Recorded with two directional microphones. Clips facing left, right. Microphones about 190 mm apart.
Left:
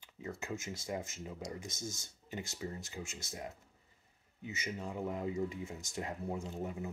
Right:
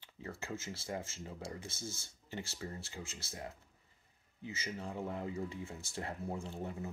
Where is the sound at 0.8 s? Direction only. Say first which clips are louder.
Left 2 dB; 20° left (ahead or behind).